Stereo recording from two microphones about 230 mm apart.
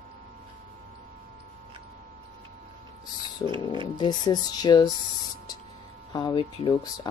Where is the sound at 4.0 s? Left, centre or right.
Centre.